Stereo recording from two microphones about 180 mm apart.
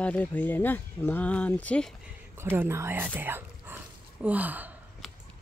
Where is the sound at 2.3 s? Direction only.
15° right (ahead or behind).